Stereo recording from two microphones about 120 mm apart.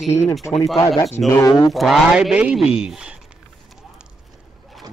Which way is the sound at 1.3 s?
30° left (ahead or behind).